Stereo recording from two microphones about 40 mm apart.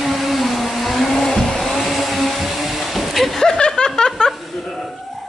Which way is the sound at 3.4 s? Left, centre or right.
Centre.